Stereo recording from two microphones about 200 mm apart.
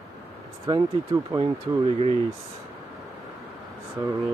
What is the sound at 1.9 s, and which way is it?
Speech, 30° right (ahead or behind).